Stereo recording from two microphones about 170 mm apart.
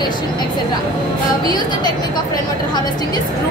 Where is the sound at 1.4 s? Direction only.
25° left (ahead or behind).